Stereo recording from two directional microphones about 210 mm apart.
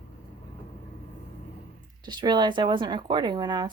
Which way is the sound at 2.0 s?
20° right (ahead or behind).